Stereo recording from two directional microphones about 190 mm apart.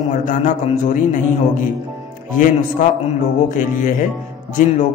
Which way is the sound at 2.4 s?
45° left (ahead or behind).